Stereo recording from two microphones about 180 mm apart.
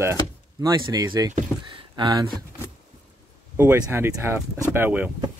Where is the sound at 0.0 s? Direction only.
15° right (ahead or behind).